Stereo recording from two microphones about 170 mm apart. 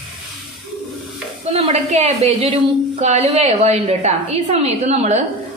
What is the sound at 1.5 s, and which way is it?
A woman's voice, 40° right (ahead or behind).